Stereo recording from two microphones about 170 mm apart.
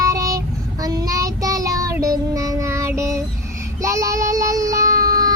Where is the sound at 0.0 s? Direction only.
20° right (ahead or behind).